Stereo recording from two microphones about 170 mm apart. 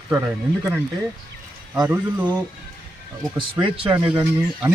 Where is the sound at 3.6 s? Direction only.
30° right (ahead or behind).